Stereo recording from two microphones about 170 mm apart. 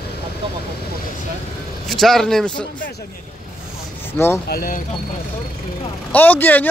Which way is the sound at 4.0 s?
15° left (ahead or behind).